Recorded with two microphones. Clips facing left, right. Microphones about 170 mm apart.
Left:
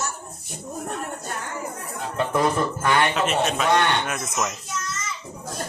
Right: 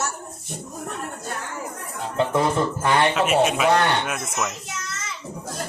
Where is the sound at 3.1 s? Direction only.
10° right (ahead or behind).